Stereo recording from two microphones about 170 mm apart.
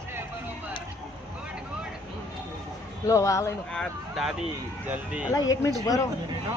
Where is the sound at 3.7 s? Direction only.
Centre (ahead or behind).